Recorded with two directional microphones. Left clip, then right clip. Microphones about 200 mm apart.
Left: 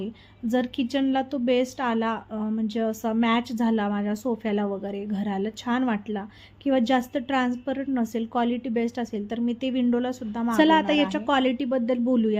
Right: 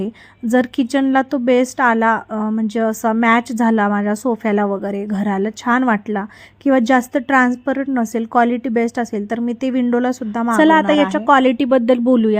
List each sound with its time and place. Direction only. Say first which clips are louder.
0.0 s a woman's voice: right 8 dB; 30° right (ahead or behind)